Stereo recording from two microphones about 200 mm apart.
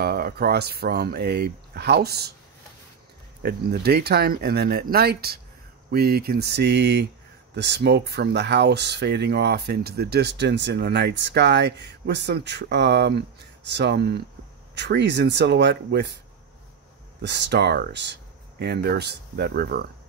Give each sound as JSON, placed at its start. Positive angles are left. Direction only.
{"t": 0.0, "sound": "speech", "side_deg": -50}
{"t": 3.4, "sound": "speech", "side_deg": -50}
{"t": 17.2, "sound": "speech", "side_deg": -60}